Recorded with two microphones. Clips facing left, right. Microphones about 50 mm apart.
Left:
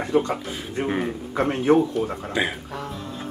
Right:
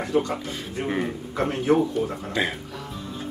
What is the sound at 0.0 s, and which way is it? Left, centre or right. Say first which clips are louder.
Speech: left 2 dB; left.